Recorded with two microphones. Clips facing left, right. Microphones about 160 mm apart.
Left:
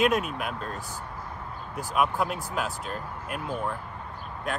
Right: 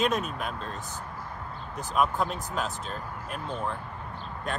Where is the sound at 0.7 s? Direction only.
20° right (ahead or behind).